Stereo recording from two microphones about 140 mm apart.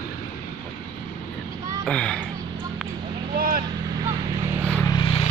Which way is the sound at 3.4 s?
90° right.